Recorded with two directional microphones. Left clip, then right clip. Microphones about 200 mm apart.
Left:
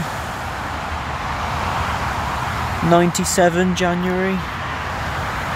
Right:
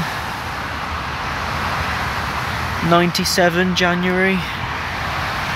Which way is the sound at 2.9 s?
15° left (ahead or behind).